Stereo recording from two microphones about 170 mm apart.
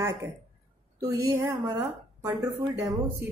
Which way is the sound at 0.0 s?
15° right (ahead or behind).